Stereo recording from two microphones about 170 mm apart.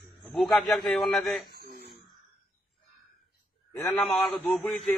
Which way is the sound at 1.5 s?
70° left (ahead or behind).